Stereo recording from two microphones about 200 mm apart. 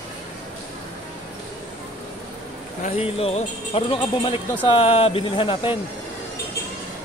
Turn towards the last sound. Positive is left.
turn(degrees=25)  # may be behind; listen again after turning